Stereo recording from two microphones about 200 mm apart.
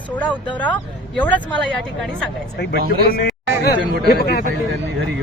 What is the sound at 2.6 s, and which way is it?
A man's voice, 55° left (ahead or behind).